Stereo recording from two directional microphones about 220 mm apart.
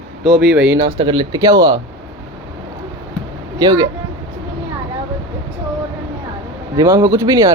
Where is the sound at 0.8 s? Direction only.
20° right (ahead or behind).